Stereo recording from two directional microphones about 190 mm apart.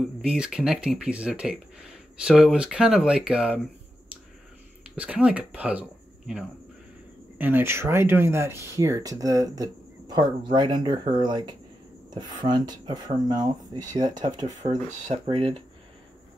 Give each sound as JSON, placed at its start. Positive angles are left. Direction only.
{"t": 0.0, "sound": "speech", "side_deg": -5}
{"t": 4.9, "sound": "speech", "side_deg": -5}
{"t": 14.7, "sound": "speech", "side_deg": -40}
{"t": 15.2, "sound": "speech", "side_deg": -25}